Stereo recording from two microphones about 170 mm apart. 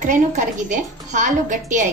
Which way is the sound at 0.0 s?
45° right (ahead or behind).